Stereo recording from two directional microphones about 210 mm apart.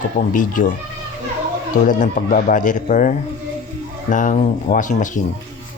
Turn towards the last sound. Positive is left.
turn(degrees=35)  # may be behind; listen again after turning